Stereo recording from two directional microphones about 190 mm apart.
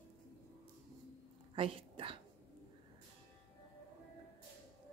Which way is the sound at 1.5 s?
30° right (ahead or behind).